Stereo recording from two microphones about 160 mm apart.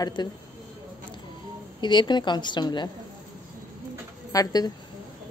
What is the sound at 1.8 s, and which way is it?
Speech, 30° left (ahead or behind).